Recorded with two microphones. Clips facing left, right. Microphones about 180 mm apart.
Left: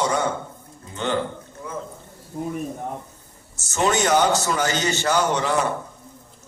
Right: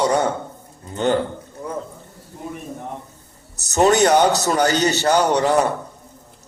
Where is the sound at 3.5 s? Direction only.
40° right (ahead or behind).